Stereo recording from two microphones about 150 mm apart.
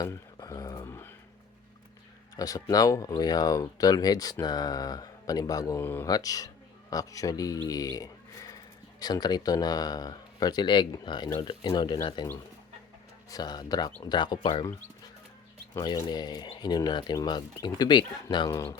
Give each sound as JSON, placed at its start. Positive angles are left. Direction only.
{"t": 0.0, "sound": "a sound", "side_deg": 20}
{"t": 2.3, "sound": "speech", "side_deg": 25}
{"t": 6.1, "sound": "speech", "side_deg": 25}
{"t": 7.7, "sound": "a sound", "side_deg": 25}
{"t": 9.0, "sound": "speech", "side_deg": 25}
{"t": 13.3, "sound": "speech", "side_deg": 25}
{"t": 15.7, "sound": "speech", "side_deg": 25}